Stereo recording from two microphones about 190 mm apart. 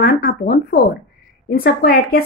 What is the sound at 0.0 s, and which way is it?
A woman's voice, 50° left (ahead or behind).